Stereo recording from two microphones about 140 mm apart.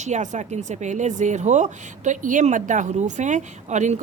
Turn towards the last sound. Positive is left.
turn(degrees=-60)  # may be behind; listen again after turning